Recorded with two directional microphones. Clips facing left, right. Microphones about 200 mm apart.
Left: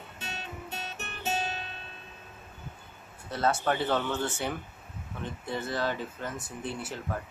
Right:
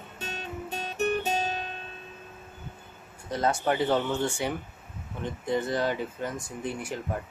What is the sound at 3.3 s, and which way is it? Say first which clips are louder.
Speech: right 2 dB; 15° right (ahead or behind).